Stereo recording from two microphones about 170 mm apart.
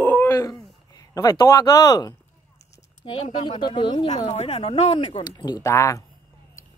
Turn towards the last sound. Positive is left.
turn(degrees=15)  # may be behind; listen again after turning